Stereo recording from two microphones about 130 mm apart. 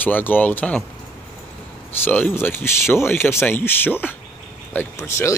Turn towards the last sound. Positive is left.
turn(degrees=20)  # may be behind; listen again after turning